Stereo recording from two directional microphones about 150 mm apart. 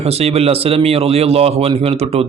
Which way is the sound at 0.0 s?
45° right (ahead or behind).